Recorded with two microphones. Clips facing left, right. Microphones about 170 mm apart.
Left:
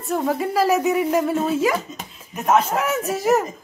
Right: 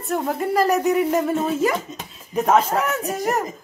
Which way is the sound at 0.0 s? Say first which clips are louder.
Left 1 dB; centre (ahead or behind).